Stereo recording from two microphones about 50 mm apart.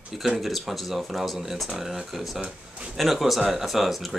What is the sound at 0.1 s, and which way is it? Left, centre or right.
Speech, centre.